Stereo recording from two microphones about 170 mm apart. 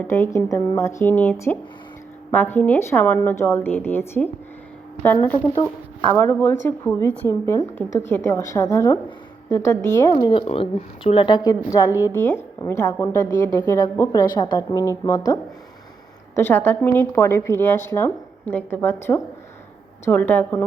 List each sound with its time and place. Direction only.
0.0 s a woman's voice: 15° left (ahead or behind)
6.1 s a woman's voice: 10° left (ahead or behind)
10.1 s a woman's voice: 30° left (ahead or behind); by 20.7 s 10° left (ahead or behind)